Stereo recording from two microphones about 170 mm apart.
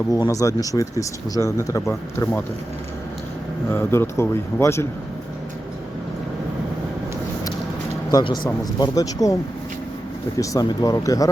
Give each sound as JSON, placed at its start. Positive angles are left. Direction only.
{"t": 0.1, "sound": "speech", "side_deg": 20}
{"t": 3.7, "sound": "speech", "side_deg": 15}
{"t": 8.1, "sound": "speech", "side_deg": 20}
{"t": 10.3, "sound": "speech", "side_deg": 20}